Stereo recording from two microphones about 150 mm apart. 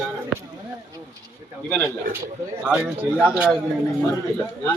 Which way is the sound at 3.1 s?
5° right (ahead or behind).